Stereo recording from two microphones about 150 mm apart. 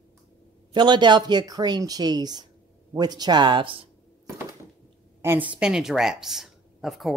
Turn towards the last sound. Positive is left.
turn(degrees=0)  # may be behind; listen again after turning